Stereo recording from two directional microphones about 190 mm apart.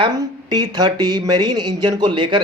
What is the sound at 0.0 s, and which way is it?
A man's voice, 20° right (ahead or behind).